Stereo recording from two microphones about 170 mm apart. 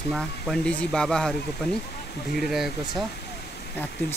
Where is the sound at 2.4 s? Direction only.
Centre (ahead or behind).